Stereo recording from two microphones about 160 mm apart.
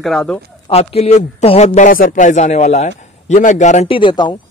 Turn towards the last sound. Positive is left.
turn(degrees=30)  # may be behind; listen again after turning